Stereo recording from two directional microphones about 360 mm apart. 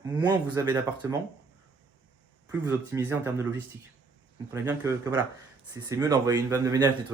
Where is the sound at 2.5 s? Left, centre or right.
Centre.